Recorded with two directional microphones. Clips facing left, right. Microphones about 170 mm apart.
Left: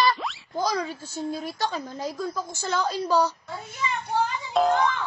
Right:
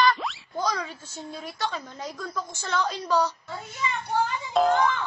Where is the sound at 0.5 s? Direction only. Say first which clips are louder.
Left 3 dB; 30° left (ahead or behind).